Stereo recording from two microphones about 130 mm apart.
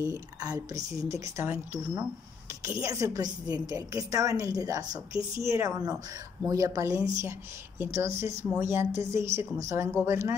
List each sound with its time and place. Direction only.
0.0 s a woman's voice: 25° right (ahead or behind)